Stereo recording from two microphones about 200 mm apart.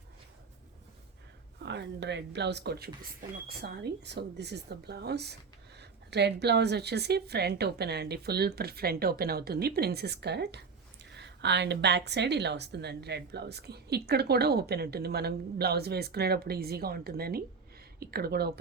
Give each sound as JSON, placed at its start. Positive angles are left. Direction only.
{"t": 1.6, "sound": "a woman's voice", "side_deg": -60}